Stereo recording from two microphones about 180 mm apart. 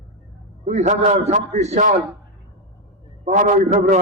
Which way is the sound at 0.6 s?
40° right (ahead or behind).